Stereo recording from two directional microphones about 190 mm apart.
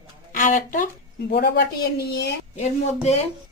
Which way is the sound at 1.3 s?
55° left (ahead or behind).